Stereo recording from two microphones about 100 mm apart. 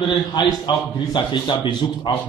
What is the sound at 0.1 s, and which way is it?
A man's voice, 45° left (ahead or behind).